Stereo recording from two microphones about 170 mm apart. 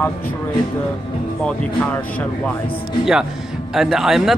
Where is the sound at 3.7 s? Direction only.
Centre (ahead or behind).